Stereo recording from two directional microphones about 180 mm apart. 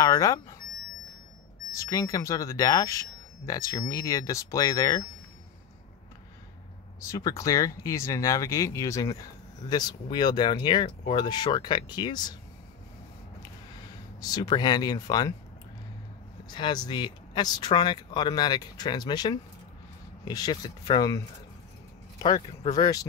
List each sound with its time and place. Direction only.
0.0 s speech: 20° left (ahead or behind)
1.9 s speech: 20° left (ahead or behind)
7.1 s speech: 20° left (ahead or behind)
14.2 s speech: 20° left (ahead or behind)
16.4 s speech: 25° left (ahead or behind)
22.7 s speech: 20° left (ahead or behind)